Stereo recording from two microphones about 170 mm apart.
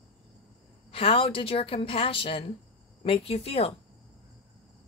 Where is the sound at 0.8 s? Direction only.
30° left (ahead or behind).